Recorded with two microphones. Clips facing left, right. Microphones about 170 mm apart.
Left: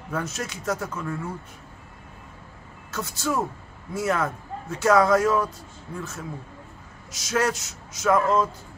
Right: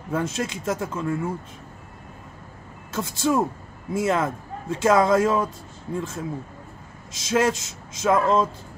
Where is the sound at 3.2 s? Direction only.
25° right (ahead or behind).